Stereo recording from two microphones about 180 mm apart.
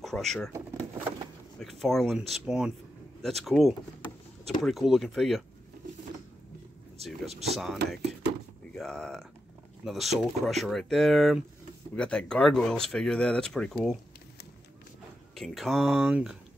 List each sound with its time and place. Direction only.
0.0 s speech: centre (ahead or behind)
0.5 s vehicle: 15° right (ahead or behind)
1.6 s speech: centre (ahead or behind)
7.2 s speech: 35° right (ahead or behind)
7.5 s speech: centre (ahead or behind)
15.3 s speech: centre (ahead or behind)